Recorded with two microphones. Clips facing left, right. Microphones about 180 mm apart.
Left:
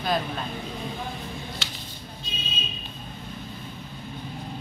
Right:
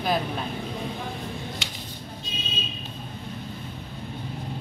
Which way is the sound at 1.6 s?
15° right (ahead or behind).